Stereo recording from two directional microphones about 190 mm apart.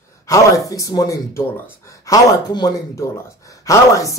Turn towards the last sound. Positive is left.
turn(degrees=15)  # may be behind; listen again after turning